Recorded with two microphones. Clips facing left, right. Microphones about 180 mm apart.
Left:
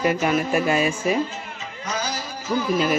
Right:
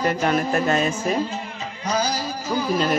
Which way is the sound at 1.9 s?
35° right (ahead or behind).